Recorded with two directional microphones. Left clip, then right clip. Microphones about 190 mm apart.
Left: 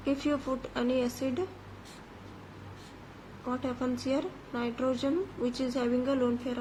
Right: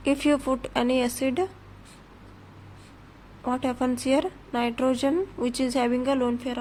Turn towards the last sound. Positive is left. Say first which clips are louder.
# right 4 dB
turn(degrees=-50)  # may be behind; listen again after turning